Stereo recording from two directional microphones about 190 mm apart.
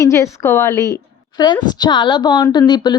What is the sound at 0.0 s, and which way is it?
A woman's voice, 15° left (ahead or behind).